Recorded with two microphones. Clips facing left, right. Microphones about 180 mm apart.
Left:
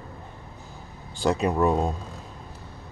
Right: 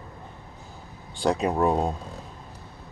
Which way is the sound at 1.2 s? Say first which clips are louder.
Even; centre (ahead or behind).